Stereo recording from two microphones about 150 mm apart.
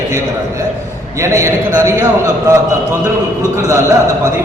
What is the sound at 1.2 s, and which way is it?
A man's voice, 20° right (ahead or behind).